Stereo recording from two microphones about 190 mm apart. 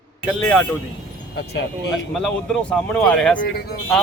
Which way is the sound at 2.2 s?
5° left (ahead or behind).